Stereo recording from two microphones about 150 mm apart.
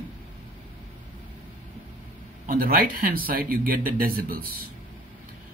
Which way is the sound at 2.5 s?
70° right (ahead or behind).